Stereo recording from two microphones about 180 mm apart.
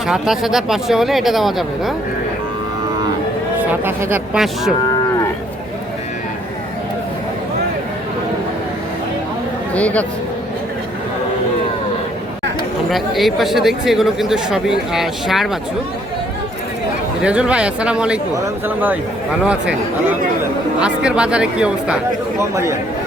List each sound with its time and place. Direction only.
0.1 s speech: centre (ahead or behind)
3.6 s speech: 10° right (ahead or behind)
9.7 s a man's voice: 5° left (ahead or behind)
12.9 s speech: centre (ahead or behind)
17.2 s speech: 5° right (ahead or behind)
22.4 s speech: 15° right (ahead or behind)